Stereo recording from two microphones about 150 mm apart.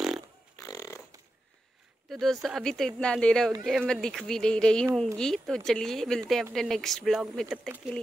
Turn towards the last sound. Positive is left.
turn(degrees=0)  # may be behind; listen again after turning